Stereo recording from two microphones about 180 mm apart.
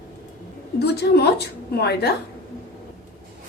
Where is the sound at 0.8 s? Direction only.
65° left (ahead or behind).